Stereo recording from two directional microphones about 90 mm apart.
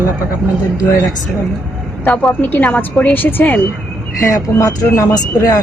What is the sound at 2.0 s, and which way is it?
A woman's voice, 15° left (ahead or behind).